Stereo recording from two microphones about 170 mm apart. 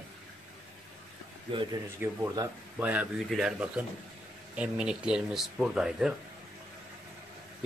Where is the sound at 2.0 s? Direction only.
10° right (ahead or behind).